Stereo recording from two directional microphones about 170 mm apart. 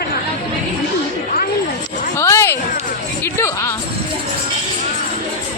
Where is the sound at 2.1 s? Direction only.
15° left (ahead or behind).